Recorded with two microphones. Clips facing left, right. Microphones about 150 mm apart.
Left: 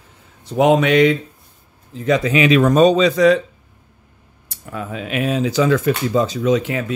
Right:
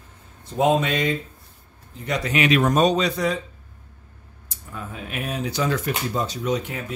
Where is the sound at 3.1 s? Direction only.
90° left.